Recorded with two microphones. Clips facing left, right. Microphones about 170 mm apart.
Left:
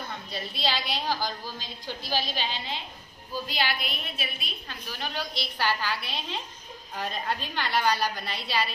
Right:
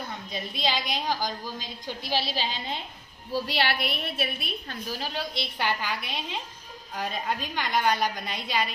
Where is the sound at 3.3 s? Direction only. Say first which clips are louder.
Right 3 dB; 70° right (ahead or behind).